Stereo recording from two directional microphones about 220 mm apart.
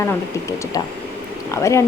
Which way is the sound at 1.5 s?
15° left (ahead or behind).